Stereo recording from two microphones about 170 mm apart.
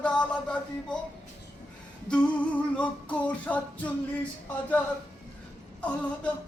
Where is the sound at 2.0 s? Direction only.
5° left (ahead or behind).